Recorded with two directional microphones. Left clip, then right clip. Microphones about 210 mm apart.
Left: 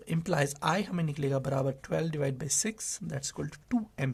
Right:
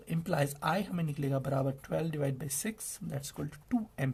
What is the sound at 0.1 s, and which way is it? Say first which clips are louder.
Speech: left 3 dB; 30° left (ahead or behind).